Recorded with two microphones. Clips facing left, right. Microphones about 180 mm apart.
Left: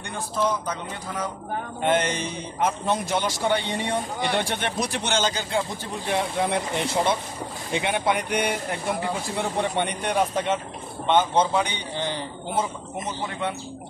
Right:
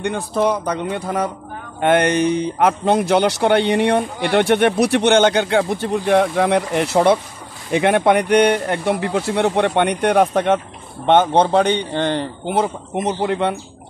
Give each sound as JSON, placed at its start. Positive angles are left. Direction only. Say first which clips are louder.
{"t": 0.0, "sound": "speech", "louder": "right 8 dB", "side_deg": -65}